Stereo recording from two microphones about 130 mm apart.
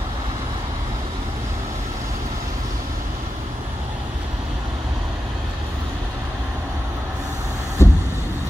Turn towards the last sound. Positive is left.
turn(degrees=20)  # may be behind; listen again after turning